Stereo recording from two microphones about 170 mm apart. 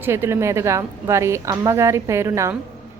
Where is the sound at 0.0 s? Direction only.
15° right (ahead or behind).